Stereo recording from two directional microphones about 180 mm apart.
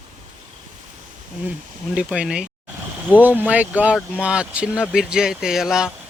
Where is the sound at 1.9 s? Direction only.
5° right (ahead or behind).